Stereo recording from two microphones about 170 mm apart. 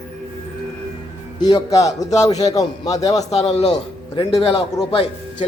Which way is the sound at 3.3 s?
40° left (ahead or behind).